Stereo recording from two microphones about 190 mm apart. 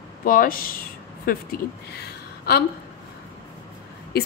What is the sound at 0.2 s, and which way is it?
A woman's voice, 50° left (ahead or behind).